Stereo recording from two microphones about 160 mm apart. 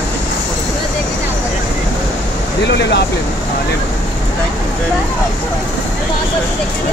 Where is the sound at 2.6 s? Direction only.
90° left.